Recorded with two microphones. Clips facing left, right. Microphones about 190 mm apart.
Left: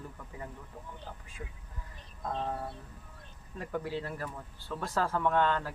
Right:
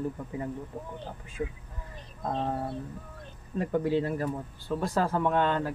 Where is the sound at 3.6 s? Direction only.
20° right (ahead or behind).